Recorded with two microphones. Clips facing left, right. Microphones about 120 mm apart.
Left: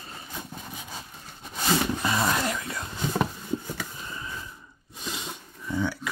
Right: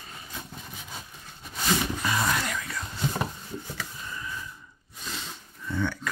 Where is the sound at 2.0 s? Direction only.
25° left (ahead or behind).